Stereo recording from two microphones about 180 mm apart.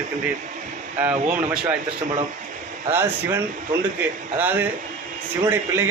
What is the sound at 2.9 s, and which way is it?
Speech, 15° right (ahead or behind).